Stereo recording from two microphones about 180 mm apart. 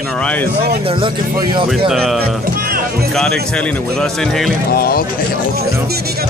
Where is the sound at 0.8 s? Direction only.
30° right (ahead or behind).